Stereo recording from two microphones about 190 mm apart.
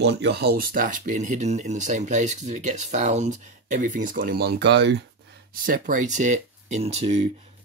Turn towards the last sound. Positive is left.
turn(degrees=-35)  # may be behind; listen again after turning